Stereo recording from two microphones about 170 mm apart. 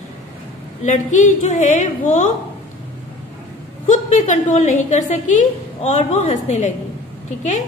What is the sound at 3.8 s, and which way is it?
A woman's voice, 45° left (ahead or behind).